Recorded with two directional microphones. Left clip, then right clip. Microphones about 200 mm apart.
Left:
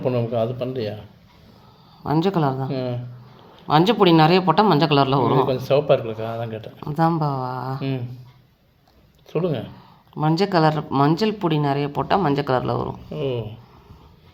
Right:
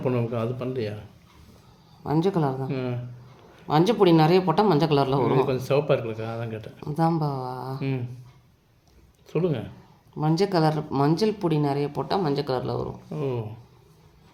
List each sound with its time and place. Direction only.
0.0 s speech: 15° right (ahead or behind)
2.0 s speech: 15° left (ahead or behind)
2.6 s speech: 15° right (ahead or behind)
3.7 s speech: 10° left (ahead or behind)
5.2 s speech: 15° right (ahead or behind)
6.7 s speech: 10° left (ahead or behind)
7.8 s speech: 15° right (ahead or behind)
9.3 s speech: 15° right (ahead or behind)
10.2 s speech: 10° left (ahead or behind)
13.1 s speech: 15° right (ahead or behind)